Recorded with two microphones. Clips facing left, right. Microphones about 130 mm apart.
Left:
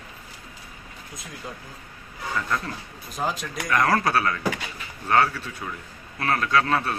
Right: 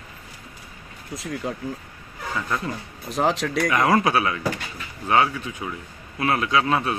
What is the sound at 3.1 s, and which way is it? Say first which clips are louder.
Speech: right 7 dB; 75° right (ahead or behind).